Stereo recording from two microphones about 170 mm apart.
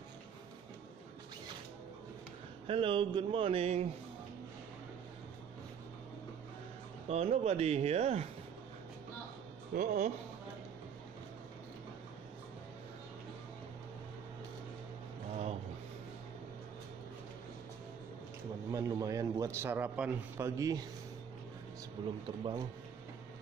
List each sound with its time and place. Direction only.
2.6 s speech: 30° right (ahead or behind)
7.1 s speech: 40° right (ahead or behind)
9.8 s speech: 45° right (ahead or behind)
18.7 s a man's voice: 20° right (ahead or behind)
22.2 s a man's voice: 25° right (ahead or behind)